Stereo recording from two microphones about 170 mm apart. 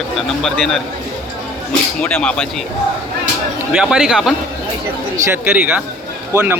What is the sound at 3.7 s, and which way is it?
A man's voice, 5° right (ahead or behind).